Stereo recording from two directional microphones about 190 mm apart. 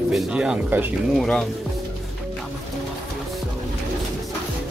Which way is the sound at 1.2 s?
5° left (ahead or behind).